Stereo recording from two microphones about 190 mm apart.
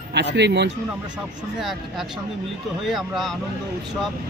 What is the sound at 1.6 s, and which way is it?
Speech, centre (ahead or behind).